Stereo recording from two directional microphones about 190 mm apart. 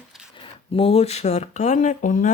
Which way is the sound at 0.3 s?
30° left (ahead or behind).